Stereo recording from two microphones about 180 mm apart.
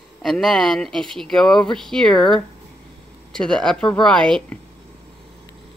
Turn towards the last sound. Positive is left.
turn(degrees=5)  # may be behind; listen again after turning